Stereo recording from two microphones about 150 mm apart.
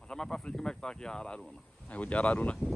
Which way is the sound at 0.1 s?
5° left (ahead or behind).